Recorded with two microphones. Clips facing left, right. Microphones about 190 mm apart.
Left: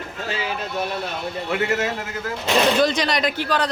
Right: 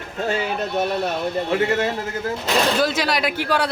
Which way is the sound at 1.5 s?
30° right (ahead or behind).